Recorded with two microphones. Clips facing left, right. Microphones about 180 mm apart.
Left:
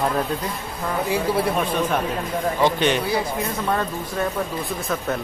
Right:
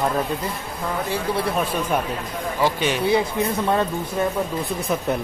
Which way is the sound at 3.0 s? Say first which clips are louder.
Right 4 dB; 25° right (ahead or behind).